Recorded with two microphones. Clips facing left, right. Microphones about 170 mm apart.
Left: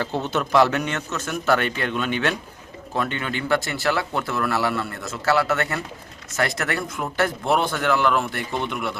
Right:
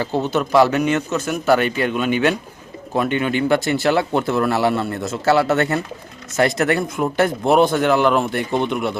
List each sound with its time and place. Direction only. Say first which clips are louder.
0.0 s a man's voice: right 5 dB; 5° right (ahead or behind); by 8.9 s 20° right (ahead or behind)